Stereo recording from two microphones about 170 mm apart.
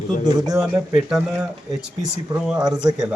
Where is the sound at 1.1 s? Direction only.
5° right (ahead or behind).